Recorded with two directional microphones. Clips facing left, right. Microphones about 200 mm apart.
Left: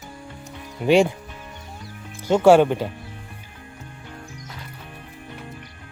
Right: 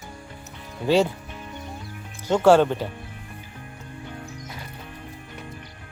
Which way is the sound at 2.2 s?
10° left (ahead or behind).